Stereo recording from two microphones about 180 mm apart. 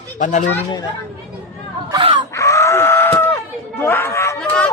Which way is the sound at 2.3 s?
15° left (ahead or behind).